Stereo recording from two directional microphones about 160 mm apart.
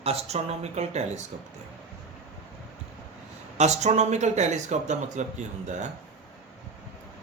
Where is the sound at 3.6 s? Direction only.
45° right (ahead or behind).